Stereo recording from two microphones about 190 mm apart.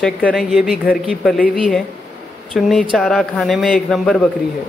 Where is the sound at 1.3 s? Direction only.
50° left (ahead or behind).